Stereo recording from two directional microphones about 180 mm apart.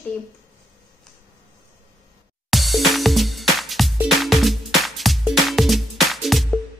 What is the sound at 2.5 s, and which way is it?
Music, centre (ahead or behind).